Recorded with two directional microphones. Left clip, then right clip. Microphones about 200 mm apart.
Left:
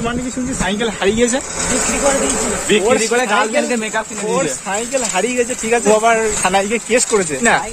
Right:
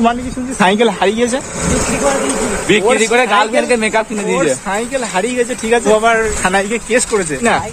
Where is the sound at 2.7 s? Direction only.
35° right (ahead or behind).